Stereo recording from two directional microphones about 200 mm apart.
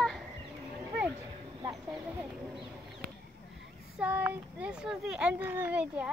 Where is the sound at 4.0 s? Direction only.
10° right (ahead or behind).